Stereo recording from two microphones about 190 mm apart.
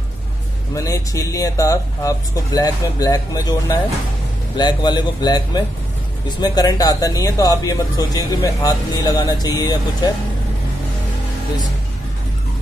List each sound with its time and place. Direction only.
0.7 s speech: 15° left (ahead or behind)